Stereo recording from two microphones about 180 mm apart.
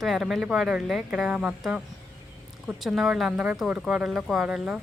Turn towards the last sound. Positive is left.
turn(degrees=-5)  # may be behind; listen again after turning